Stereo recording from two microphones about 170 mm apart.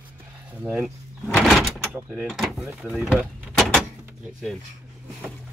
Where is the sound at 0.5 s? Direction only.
10° right (ahead or behind).